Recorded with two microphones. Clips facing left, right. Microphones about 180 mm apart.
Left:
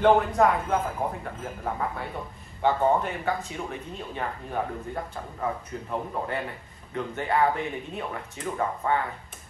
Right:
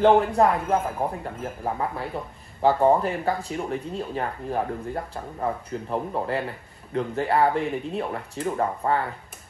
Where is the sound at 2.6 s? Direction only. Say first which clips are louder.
Right 4 dB; 35° right (ahead or behind).